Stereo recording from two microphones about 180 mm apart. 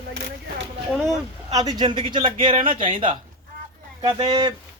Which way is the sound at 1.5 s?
25° right (ahead or behind).